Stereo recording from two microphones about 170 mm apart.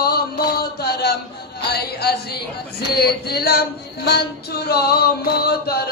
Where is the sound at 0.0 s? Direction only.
65° left (ahead or behind).